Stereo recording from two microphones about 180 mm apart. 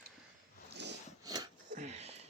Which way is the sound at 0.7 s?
70° right (ahead or behind).